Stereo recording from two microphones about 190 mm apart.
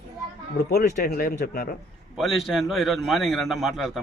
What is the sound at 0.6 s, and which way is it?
Speech, 55° left (ahead or behind).